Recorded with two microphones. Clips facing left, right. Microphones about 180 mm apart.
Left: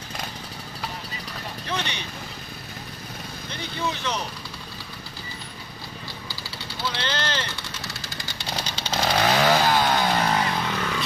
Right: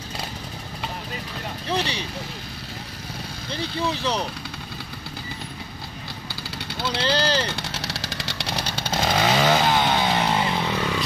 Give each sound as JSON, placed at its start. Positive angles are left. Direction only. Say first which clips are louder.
{"t": 1.7, "sound": "vehicle", "louder": "right 5 dB", "side_deg": -35}
{"t": 3.5, "sound": "speech", "louder": "right 4 dB", "side_deg": -35}
{"t": 7.0, "sound": "speech", "louder": "right 8 dB", "side_deg": -35}
{"t": 7.6, "sound": "vehicle", "louder": "right 5 dB", "side_deg": -90}
{"t": 9.1, "sound": "chainsaw", "louder": "even", "side_deg": 0}
{"t": 9.8, "sound": "music", "louder": "even", "side_deg": -5}
{"t": 10.1, "sound": "motorcycle", "louder": "right 1 dB", "side_deg": -15}